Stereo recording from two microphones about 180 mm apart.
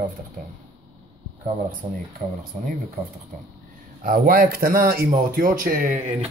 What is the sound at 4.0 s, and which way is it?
A man's voice, 50° right (ahead or behind).